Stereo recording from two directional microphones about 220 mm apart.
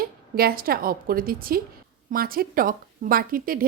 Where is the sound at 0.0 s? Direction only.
45° right (ahead or behind).